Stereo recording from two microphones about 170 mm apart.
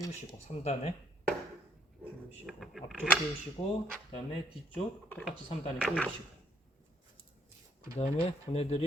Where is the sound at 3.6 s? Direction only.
35° left (ahead or behind).